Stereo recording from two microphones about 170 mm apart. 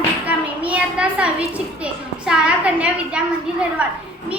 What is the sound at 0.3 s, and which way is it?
A child's voice, 10° right (ahead or behind).